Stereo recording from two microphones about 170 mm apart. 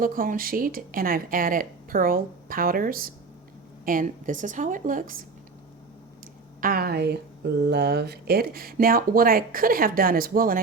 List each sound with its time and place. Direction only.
0.0 s a woman's voice: 55° right (ahead or behind)
6.6 s speech: 60° right (ahead or behind)